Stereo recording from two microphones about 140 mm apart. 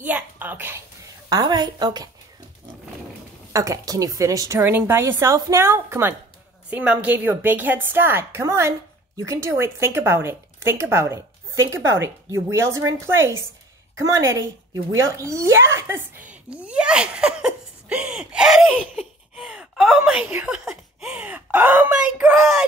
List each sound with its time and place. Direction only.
0.0 s a sound: 10° right (ahead or behind)
1.3 s a woman's voice: 30° right (ahead or behind)
3.5 s a woman's voice: 25° right (ahead or behind)